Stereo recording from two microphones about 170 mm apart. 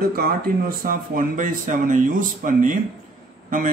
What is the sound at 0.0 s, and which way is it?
A man's voice, 60° right (ahead or behind).